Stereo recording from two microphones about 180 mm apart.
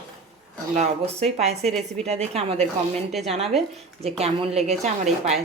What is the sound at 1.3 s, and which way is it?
Speech, 35° right (ahead or behind).